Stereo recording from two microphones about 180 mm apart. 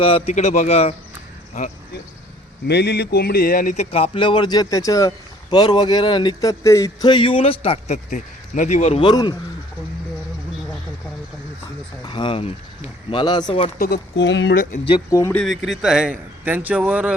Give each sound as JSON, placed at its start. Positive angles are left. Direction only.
{"t": 0.0, "sound": "speech", "side_deg": 35}
{"t": 2.6, "sound": "speech", "side_deg": 65}
{"t": 9.0, "sound": "speech", "side_deg": 25}
{"t": 12.0, "sound": "speech", "side_deg": 30}
{"t": 13.7, "sound": "speech", "side_deg": 60}
{"t": 14.5, "sound": "speech", "side_deg": 50}
{"t": 14.8, "sound": "speech", "side_deg": 20}
{"t": 15.4, "sound": "a man's voice", "side_deg": 0}